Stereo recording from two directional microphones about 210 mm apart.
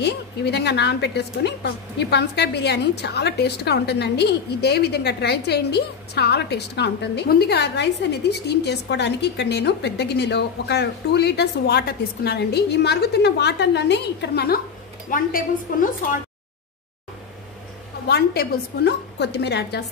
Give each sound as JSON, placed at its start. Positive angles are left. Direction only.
{"t": 0.0, "sound": "a woman's voice", "side_deg": 50}
{"t": 18.0, "sound": "a woman's voice", "side_deg": 50}